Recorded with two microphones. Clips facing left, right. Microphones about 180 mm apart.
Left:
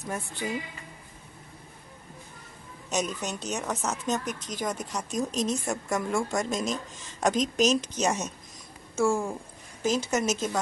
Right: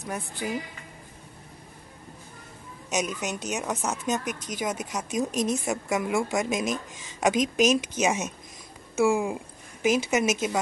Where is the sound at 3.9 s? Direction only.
15° right (ahead or behind).